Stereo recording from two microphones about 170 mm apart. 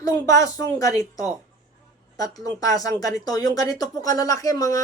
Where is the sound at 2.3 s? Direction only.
20° left (ahead or behind).